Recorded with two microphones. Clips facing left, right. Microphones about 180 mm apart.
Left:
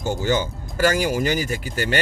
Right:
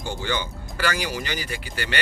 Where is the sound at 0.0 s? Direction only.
45° left (ahead or behind).